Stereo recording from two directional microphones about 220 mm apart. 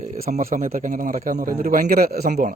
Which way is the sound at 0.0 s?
35° right (ahead or behind).